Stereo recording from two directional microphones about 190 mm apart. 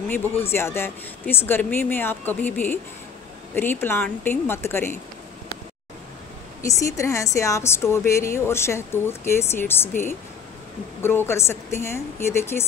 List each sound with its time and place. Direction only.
0.4 s speech: 15° left (ahead or behind)
6.6 s speech: 15° left (ahead or behind)